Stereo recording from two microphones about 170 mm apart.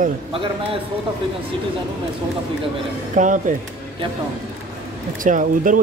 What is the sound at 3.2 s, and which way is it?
Speech, 50° right (ahead or behind).